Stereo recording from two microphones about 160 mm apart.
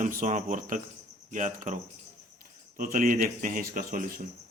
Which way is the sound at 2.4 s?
60° right (ahead or behind).